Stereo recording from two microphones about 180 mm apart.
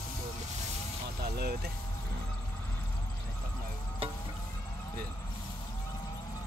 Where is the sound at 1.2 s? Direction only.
60° right (ahead or behind).